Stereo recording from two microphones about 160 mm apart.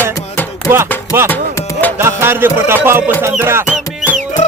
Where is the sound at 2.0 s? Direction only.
15° right (ahead or behind).